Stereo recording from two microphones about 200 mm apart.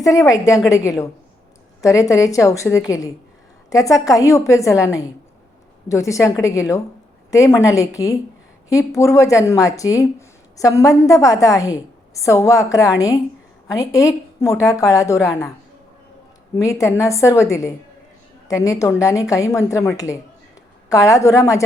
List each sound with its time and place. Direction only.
0.0 s a woman's voice: 15° left (ahead or behind)
5.9 s a woman's voice: 15° left (ahead or behind)
16.6 s a woman's voice: 15° left (ahead or behind)